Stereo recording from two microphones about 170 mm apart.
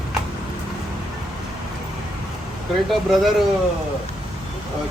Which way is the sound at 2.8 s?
Centre (ahead or behind).